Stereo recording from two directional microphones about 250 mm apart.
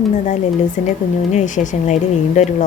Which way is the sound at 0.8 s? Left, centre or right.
Left.